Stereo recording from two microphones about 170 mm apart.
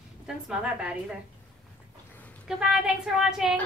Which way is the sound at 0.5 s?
5° right (ahead or behind).